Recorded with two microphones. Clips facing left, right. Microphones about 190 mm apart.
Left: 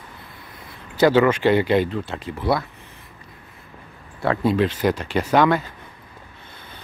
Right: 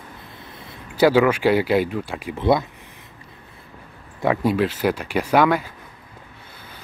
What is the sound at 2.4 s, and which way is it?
Speech, 20° right (ahead or behind).